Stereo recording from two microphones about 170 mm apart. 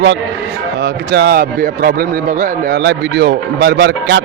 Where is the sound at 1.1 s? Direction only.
70° right (ahead or behind).